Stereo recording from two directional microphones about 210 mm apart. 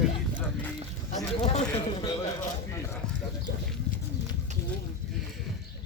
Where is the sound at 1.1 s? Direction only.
35° left (ahead or behind).